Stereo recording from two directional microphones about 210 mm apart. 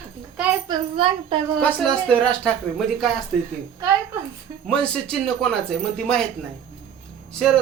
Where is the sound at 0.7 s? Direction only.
25° right (ahead or behind).